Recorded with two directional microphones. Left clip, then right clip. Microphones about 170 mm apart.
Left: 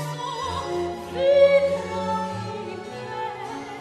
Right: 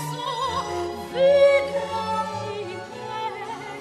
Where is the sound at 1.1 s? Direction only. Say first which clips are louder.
Even; 25° right (ahead or behind).